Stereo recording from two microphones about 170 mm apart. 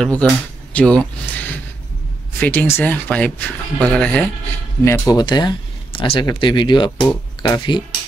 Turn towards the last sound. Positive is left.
turn(degrees=25)  # may be behind; listen again after turning